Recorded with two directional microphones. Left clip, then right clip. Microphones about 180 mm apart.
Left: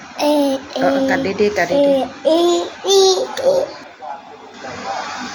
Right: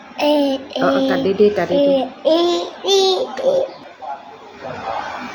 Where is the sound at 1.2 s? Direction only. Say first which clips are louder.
Right 2 dB; 25° right (ahead or behind).